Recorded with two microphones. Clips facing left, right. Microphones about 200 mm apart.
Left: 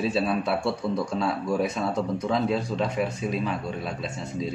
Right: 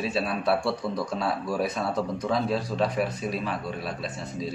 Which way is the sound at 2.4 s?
25° left (ahead or behind).